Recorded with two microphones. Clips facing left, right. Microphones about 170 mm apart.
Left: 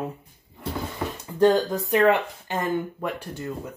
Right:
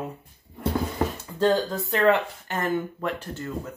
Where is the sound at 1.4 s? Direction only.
15° left (ahead or behind).